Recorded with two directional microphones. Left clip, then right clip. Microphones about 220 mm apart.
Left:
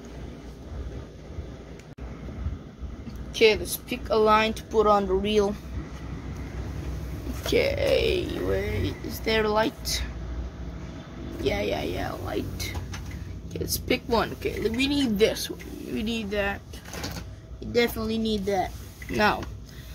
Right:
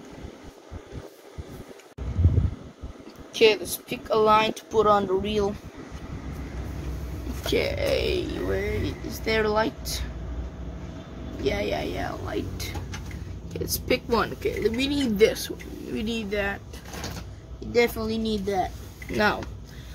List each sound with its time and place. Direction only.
3.3 s speech: centre (ahead or behind)
5.2 s speech: 20° left (ahead or behind)
7.4 s speech: 5° left (ahead or behind)
11.4 s speech: 5° left (ahead or behind)
13.7 s speech: 5° left (ahead or behind)
17.7 s speech: 10° left (ahead or behind)
19.1 s speech: 15° left (ahead or behind)